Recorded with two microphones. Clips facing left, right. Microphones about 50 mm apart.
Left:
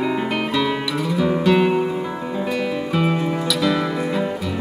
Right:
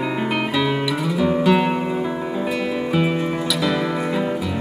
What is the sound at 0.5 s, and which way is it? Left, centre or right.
Music, centre.